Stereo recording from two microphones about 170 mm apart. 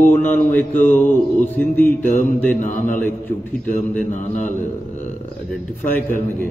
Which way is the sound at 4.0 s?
50° left (ahead or behind).